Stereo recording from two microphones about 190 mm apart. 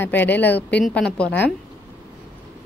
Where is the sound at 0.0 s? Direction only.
10° left (ahead or behind).